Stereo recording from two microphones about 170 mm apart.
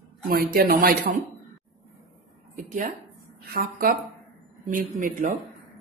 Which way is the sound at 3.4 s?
60° right (ahead or behind).